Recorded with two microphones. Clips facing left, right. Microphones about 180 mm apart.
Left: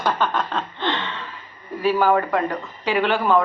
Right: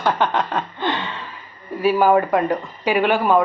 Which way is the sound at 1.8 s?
15° right (ahead or behind).